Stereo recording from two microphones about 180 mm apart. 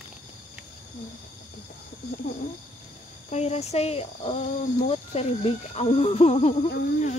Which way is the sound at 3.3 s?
35° left (ahead or behind).